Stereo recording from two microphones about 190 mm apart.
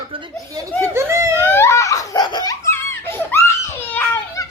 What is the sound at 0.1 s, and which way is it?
Speech, 15° right (ahead or behind).